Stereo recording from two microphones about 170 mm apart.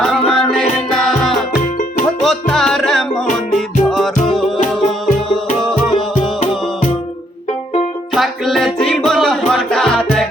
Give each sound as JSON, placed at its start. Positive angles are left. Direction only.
{"t": 0.0, "sound": "music", "side_deg": 0}
{"t": 8.1, "sound": "music", "side_deg": 0}